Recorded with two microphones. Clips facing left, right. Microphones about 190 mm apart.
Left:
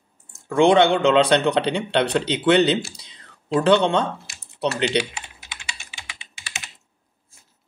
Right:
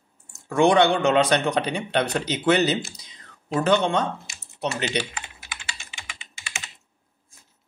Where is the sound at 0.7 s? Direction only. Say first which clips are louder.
Left 3 dB; 25° left (ahead or behind).